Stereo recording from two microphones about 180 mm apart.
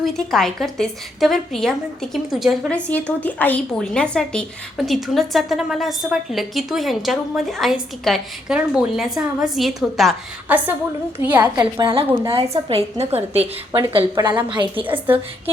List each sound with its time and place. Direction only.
0.0 s a woman's voice: centre (ahead or behind)
11.5 s a woman's voice: 25° right (ahead or behind)
13.7 s a woman's voice: 25° right (ahead or behind)
14.8 s a woman's voice: 10° right (ahead or behind)